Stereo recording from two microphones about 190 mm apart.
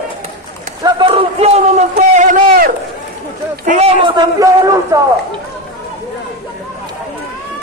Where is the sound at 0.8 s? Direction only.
25° right (ahead or behind).